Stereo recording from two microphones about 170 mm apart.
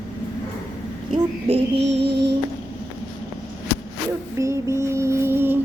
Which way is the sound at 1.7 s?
80° right.